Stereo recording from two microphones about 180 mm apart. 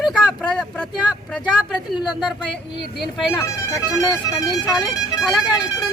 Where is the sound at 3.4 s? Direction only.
20° left (ahead or behind).